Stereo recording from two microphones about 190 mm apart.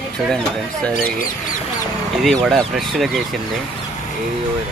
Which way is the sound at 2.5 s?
Centre (ahead or behind).